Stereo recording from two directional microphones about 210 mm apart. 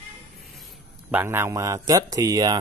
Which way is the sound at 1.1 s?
10° right (ahead or behind).